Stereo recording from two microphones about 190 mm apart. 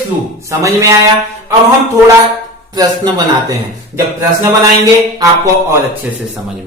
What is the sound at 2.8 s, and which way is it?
Music, 20° right (ahead or behind).